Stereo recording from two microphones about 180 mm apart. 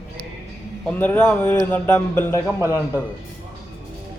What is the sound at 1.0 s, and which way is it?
A man's voice, 10° left (ahead or behind).